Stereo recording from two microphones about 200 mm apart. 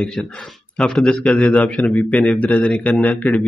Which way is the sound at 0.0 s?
Centre (ahead or behind).